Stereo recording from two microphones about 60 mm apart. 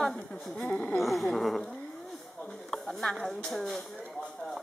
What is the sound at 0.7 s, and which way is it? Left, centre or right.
Speech, left.